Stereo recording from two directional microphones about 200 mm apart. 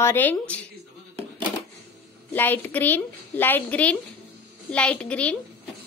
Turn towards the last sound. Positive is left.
turn(degrees=5)  # may be behind; listen again after turning